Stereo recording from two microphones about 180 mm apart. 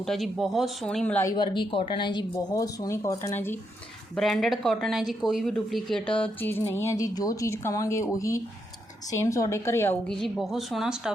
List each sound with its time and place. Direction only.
0.0 s a woman's voice: centre (ahead or behind)
1.4 s speech: 30° left (ahead or behind); by 3.6 s 10° left (ahead or behind)
4.1 s a woman's voice: centre (ahead or behind)